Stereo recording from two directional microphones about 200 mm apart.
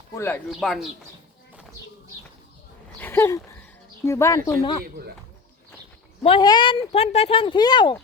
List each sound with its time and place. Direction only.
0.1 s speech: 10° left (ahead or behind)
0.6 s speech: centre (ahead or behind)
3.0 s a sound: 10° left (ahead or behind)
4.0 s speech: 15° left (ahead or behind)
4.8 s speech: 50° right (ahead or behind)
6.2 s speech: 25° left (ahead or behind)